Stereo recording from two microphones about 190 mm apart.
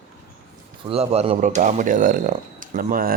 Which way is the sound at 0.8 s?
30° right (ahead or behind).